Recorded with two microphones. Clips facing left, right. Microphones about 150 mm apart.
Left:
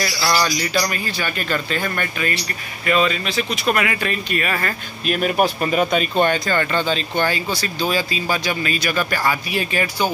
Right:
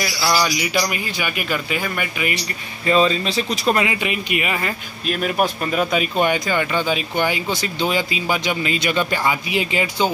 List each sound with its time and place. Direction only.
0.2 s speech: 10° right (ahead or behind)
2.9 s speech: 25° right (ahead or behind)
5.0 s speech: centre (ahead or behind); by 10.1 s 20° right (ahead or behind)